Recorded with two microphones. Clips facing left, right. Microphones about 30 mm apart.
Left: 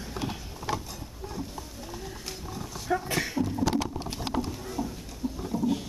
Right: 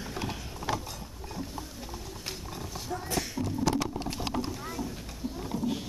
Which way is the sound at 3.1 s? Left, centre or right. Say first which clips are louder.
Left 3 dB; left.